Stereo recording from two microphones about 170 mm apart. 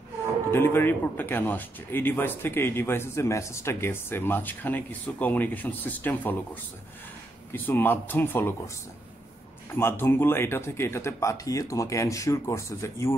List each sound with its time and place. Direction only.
0.5 s speech: 15° left (ahead or behind)
9.8 s speech: 15° left (ahead or behind)